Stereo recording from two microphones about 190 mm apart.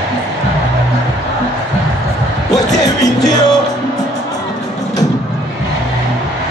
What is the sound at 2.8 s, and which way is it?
Music, 20° left (ahead or behind).